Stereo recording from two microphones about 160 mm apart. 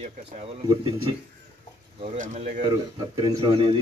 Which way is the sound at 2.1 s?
50° right (ahead or behind).